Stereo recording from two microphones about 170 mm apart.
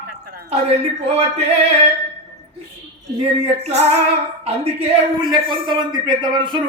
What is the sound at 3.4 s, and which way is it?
Speech, 40° right (ahead or behind).